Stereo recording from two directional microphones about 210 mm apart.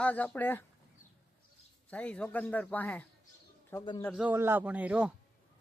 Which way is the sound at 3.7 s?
20° left (ahead or behind).